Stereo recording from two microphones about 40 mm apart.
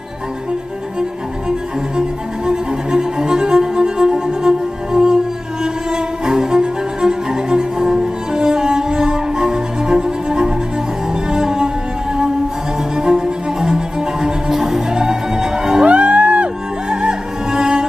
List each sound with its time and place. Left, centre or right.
2.0 s music: centre
12.9 s music: centre
15.8 s music: right
16.9 s music: centre